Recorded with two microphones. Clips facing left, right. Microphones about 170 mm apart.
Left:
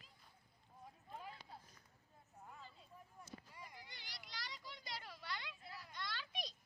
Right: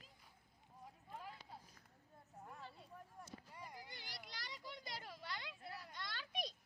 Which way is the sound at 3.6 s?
40° right (ahead or behind).